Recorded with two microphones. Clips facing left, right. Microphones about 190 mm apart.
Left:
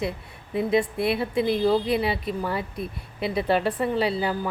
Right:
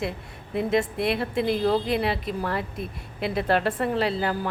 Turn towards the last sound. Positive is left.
turn(degrees=0)  # may be behind; listen again after turning